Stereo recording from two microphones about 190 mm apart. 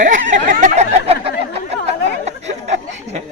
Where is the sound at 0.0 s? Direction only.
40° right (ahead or behind).